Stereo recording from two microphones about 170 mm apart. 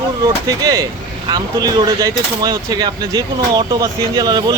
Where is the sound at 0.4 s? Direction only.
20° right (ahead or behind).